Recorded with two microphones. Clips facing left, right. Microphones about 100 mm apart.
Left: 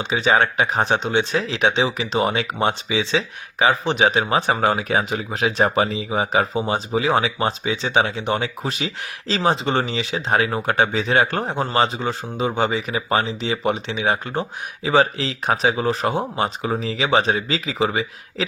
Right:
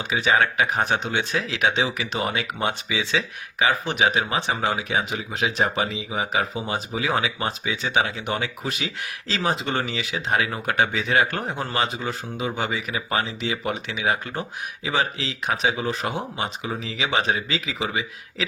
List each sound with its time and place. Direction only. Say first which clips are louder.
0.0 s speech: left 3 dB; 25° left (ahead or behind)